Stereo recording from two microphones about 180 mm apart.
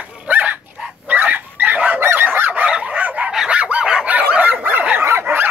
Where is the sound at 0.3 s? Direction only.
10° right (ahead or behind).